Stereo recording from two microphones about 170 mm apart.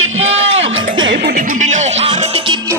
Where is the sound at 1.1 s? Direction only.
55° right (ahead or behind); by 2.6 s 35° right (ahead or behind).